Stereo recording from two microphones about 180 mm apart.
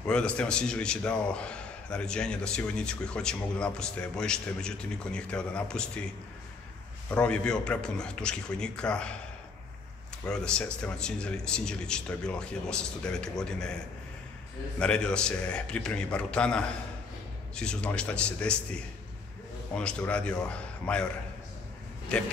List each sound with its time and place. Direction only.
0.0 s a man's voice: 5° left (ahead or behind)
7.1 s a man's voice: 5° left (ahead or behind)
10.2 s a man's voice: 5° left (ahead or behind)
14.8 s a man's voice: 5° left (ahead or behind)
19.7 s a man's voice: 5° left (ahead or behind)
22.1 s a man's voice: 5° left (ahead or behind)